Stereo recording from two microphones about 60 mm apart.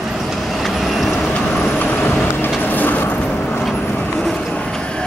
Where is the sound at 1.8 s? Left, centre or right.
Left.